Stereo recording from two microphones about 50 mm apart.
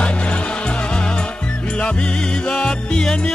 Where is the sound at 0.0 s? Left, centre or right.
Left.